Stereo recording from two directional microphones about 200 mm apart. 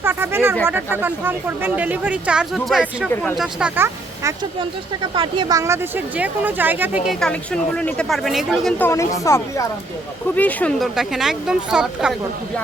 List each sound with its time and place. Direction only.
0.0 s speech: 10° right (ahead or behind)
5.1 s speech: 25° right (ahead or behind); by 8.7 s centre (ahead or behind)
8.8 s speech: 15° left (ahead or behind); by 12.1 s 5° right (ahead or behind)